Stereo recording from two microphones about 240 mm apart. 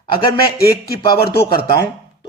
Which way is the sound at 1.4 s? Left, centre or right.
Centre.